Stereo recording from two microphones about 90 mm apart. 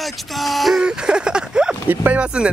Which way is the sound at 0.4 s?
Centre (ahead or behind).